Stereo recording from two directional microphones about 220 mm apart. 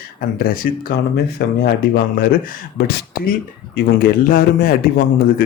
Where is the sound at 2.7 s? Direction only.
45° left (ahead or behind).